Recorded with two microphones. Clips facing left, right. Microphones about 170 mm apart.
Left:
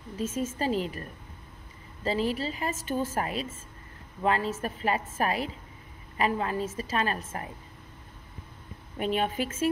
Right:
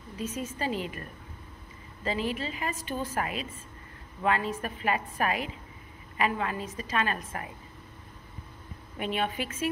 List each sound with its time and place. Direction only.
0.2 s a woman's voice: 45° left (ahead or behind)
2.0 s a woman's voice: 40° left (ahead or behind)
8.9 s a woman's voice: 40° left (ahead or behind)